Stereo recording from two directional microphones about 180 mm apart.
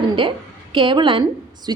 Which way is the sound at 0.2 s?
30° right (ahead or behind).